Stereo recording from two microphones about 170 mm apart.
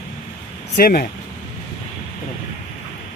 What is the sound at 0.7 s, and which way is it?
Speech, 60° left (ahead or behind).